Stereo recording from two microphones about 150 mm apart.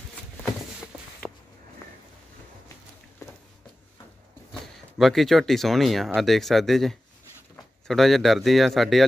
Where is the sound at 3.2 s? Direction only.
20° left (ahead or behind).